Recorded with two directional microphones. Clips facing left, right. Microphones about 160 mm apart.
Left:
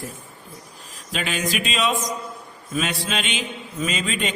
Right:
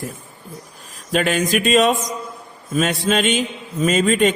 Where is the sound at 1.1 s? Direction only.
50° right (ahead or behind).